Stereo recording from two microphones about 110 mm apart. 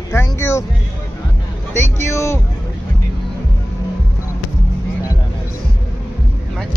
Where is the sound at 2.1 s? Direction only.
25° left (ahead or behind).